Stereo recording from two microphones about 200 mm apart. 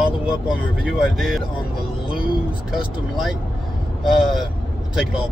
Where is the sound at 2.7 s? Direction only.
5° right (ahead or behind).